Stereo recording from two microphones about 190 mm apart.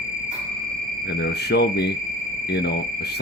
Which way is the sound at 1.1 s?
60° left (ahead or behind).